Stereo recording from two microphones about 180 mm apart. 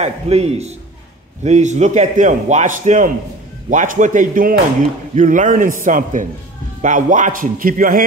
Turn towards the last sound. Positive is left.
turn(degrees=-50)  # may be behind; listen again after turning